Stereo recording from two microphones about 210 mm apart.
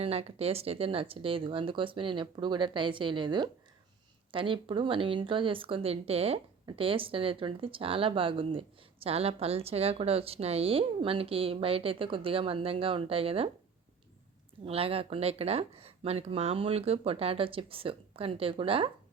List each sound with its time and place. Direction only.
0.0 s speech: 30° right (ahead or behind)
14.6 s speech: 25° right (ahead or behind)